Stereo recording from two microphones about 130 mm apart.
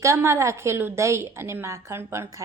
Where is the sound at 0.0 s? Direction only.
20° right (ahead or behind).